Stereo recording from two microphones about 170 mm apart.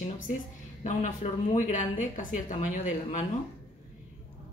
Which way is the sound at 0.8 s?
50° left (ahead or behind).